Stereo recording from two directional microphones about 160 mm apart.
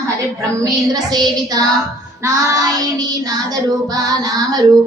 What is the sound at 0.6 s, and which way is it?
Child singing, 25° right (ahead or behind).